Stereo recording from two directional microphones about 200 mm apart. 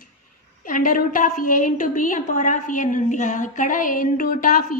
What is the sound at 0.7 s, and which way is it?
A woman's voice, 45° left (ahead or behind).